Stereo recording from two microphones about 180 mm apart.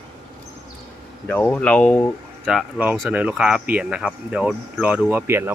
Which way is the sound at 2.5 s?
5° right (ahead or behind).